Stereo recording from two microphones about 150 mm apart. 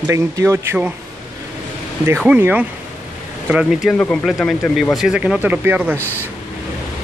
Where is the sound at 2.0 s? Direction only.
10° right (ahead or behind).